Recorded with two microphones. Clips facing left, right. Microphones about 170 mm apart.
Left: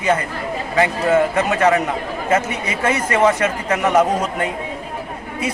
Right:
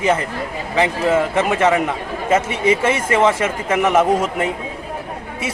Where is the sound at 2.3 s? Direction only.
25° right (ahead or behind).